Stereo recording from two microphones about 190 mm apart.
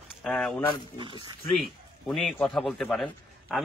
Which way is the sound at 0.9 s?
25° right (ahead or behind).